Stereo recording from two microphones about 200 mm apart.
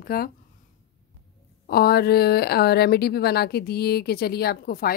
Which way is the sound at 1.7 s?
50° left (ahead or behind).